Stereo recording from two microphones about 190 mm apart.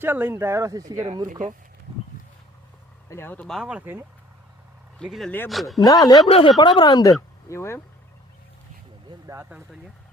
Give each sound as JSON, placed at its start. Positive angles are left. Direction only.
{"t": 0.0, "sound": "speech", "side_deg": -10}
{"t": 1.3, "sound": "speech", "side_deg": -40}
{"t": 3.1, "sound": "speech", "side_deg": 10}
{"t": 5.8, "sound": "speech", "side_deg": 20}
{"t": 6.2, "sound": "speech", "side_deg": 30}
{"t": 9.0, "sound": "speech", "side_deg": -15}